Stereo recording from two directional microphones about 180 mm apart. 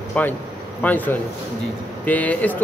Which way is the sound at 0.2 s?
10° left (ahead or behind).